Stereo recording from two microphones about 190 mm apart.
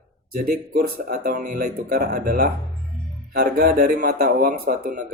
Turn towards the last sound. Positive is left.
turn(degrees=-55)  # may be behind; listen again after turning